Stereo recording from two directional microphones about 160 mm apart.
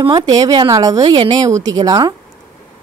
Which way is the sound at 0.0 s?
30° right (ahead or behind).